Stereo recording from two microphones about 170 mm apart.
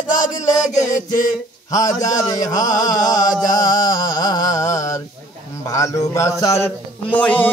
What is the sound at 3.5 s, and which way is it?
Music, 55° left (ahead or behind).